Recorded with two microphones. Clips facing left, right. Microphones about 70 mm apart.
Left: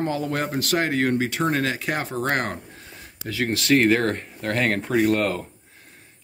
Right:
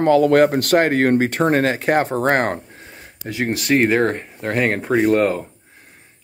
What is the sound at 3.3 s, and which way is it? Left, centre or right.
Speech, right.